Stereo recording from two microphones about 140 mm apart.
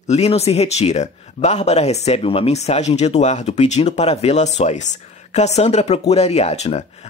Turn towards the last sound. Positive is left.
turn(degrees=50)  # may be behind; listen again after turning